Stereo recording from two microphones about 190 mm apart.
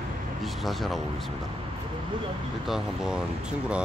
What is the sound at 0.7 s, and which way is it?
Speech, centre (ahead or behind).